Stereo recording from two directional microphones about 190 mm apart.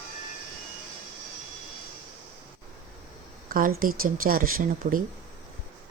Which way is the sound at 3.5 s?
45° right (ahead or behind).